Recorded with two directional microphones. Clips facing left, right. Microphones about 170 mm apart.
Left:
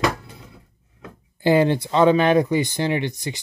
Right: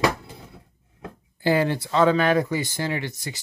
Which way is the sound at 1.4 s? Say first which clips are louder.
Left 4 dB; 20° left (ahead or behind).